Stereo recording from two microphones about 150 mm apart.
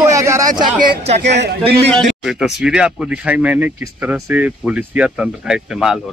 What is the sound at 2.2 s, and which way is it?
Speech, 5° right (ahead or behind).